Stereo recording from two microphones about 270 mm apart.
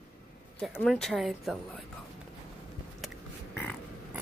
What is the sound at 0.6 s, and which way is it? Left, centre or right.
Speech, centre.